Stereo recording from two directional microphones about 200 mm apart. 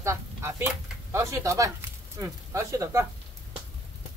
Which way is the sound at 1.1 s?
15° right (ahead or behind).